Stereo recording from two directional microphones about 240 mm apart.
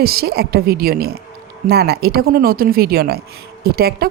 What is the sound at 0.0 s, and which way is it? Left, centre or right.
A woman's voice, right.